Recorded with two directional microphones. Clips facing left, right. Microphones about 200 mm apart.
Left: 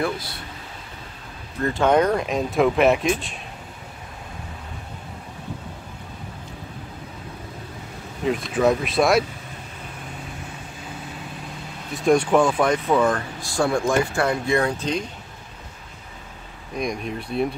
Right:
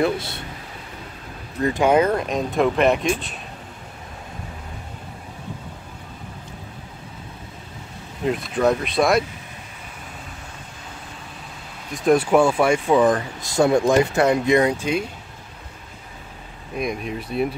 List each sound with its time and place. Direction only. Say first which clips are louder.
0.0 s speech: right 4 dB; 25° right (ahead or behind)
1.6 s speech: right 1 dB; 15° right (ahead or behind)
8.3 s speech: even; centre (ahead or behind)
11.9 s speech: right 1 dB; centre (ahead or behind)
16.7 s speech: right 1 dB; 5° right (ahead or behind)